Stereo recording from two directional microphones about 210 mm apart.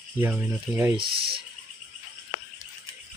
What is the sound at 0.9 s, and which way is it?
Speech, 45° right (ahead or behind).